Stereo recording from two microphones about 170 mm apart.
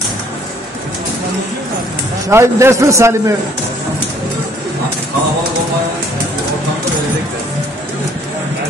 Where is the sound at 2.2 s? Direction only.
15° right (ahead or behind).